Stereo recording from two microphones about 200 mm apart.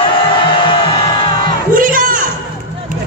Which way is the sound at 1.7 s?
45° right (ahead or behind).